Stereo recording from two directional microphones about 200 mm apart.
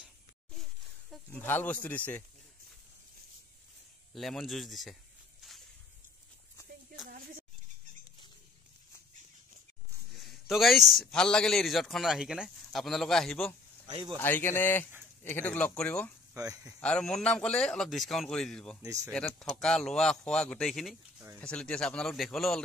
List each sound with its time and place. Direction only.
1.1 s speech: 10° left (ahead or behind)
4.1 s a man's voice: centre (ahead or behind)
7.1 s a sound: 45° right (ahead or behind)
10.1 s a man's voice: centre (ahead or behind)
13.8 s speech: 25° right (ahead or behind)
14.1 s speech: 10° left (ahead or behind)
16.3 s speech: 15° right (ahead or behind)
16.8 s a man's voice: 5° left (ahead or behind)
18.8 s speech: 15° right (ahead or behind)
19.6 s a man's voice: 5° left (ahead or behind)